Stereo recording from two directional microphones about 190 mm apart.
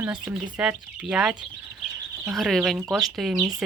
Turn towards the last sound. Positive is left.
turn(degrees=0)  # may be behind; listen again after turning